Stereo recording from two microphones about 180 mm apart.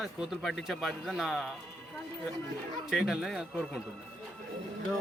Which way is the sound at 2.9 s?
Centre (ahead or behind).